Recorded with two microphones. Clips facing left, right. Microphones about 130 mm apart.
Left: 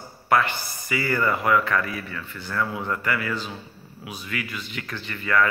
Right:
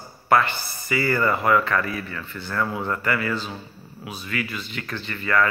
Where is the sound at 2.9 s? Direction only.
10° left (ahead or behind).